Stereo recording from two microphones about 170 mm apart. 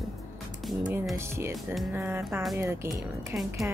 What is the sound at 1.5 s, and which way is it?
Music, centre (ahead or behind).